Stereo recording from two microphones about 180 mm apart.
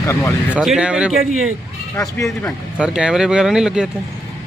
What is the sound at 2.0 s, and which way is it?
Speech, 15° left (ahead or behind).